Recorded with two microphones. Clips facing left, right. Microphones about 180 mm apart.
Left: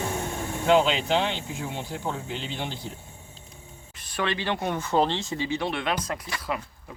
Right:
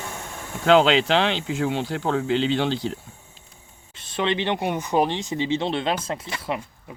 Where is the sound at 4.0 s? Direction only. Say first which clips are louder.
Right 5 dB; 25° right (ahead or behind).